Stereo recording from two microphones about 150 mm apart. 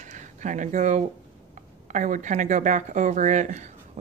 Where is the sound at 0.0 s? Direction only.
55° right (ahead or behind).